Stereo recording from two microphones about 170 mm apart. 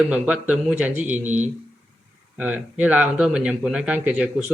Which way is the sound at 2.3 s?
10° right (ahead or behind).